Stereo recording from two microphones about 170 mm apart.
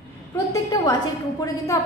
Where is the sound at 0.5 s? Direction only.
20° left (ahead or behind).